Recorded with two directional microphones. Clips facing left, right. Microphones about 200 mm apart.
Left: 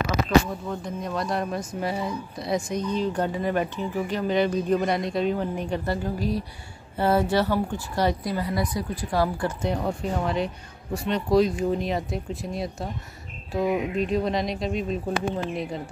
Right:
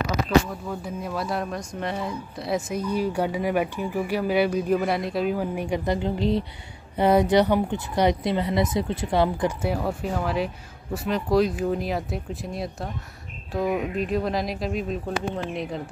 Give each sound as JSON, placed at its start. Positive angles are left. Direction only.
{"t": 0.7, "sound": "speech", "side_deg": -5}
{"t": 9.6, "sound": "speech", "side_deg": -5}